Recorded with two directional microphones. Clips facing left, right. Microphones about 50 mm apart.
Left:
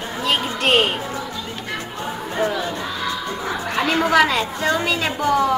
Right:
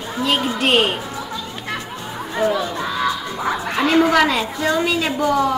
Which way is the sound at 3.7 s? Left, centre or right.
Centre.